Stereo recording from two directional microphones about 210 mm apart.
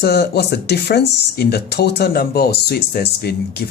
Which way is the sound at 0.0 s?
50° left (ahead or behind).